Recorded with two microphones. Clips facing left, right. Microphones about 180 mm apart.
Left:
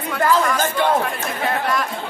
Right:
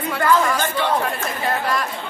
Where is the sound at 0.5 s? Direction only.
50° left (ahead or behind).